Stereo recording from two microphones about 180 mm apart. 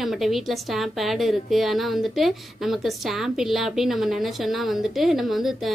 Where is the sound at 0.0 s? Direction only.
Centre (ahead or behind).